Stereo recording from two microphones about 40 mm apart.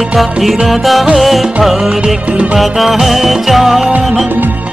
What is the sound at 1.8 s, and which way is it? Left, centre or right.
Music, centre.